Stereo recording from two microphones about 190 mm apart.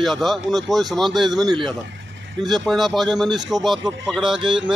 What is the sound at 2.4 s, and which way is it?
Speech, centre (ahead or behind).